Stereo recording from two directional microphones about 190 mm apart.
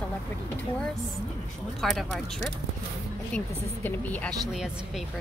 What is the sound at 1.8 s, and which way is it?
Speech, centre (ahead or behind).